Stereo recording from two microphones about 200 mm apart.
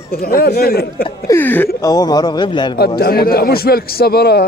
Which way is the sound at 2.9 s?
50° left (ahead or behind).